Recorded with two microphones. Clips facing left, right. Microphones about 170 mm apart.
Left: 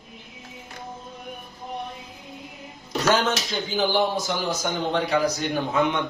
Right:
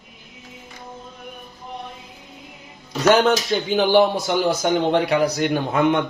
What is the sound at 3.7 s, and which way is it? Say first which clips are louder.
A man's voice: right 6 dB; 65° right (ahead or behind).